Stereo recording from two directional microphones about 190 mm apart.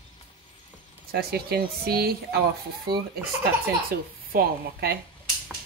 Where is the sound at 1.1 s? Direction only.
55° right (ahead or behind).